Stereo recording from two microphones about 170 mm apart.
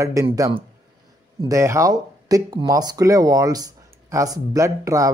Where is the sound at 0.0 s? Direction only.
20° right (ahead or behind).